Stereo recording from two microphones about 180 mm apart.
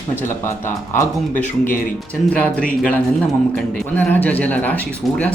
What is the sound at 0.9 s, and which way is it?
Speech, 45° left (ahead or behind).